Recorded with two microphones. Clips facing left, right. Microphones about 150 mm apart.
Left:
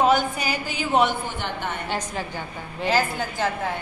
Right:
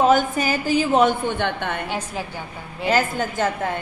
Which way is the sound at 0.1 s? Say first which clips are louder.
Right 4 dB; 50° right (ahead or behind).